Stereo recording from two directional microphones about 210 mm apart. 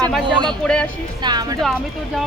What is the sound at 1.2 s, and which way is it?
Speech, 20° right (ahead or behind).